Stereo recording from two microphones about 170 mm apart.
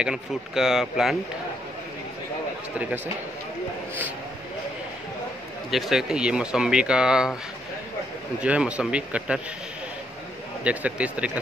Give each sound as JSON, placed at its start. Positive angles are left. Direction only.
{"t": 0.0, "sound": "speech", "side_deg": -5}
{"t": 5.7, "sound": "speech", "side_deg": 0}
{"t": 8.4, "sound": "speech", "side_deg": -5}
{"t": 10.6, "sound": "speech", "side_deg": -10}